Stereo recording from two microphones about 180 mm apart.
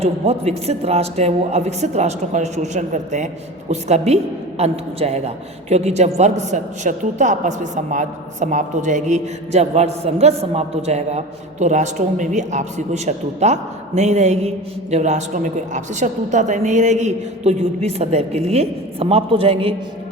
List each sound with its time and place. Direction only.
0.0 s a man's voice: 35° right (ahead or behind)